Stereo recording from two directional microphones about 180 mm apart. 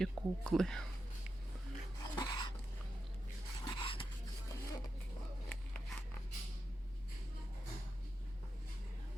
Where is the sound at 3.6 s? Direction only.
30° left (ahead or behind).